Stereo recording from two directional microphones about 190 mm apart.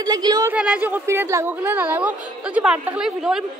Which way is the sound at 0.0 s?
20° right (ahead or behind).